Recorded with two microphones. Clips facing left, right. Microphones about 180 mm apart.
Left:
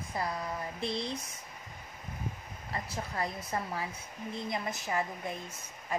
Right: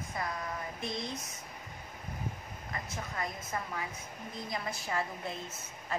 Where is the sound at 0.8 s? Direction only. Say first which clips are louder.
Left 5 dB; 30° left (ahead or behind).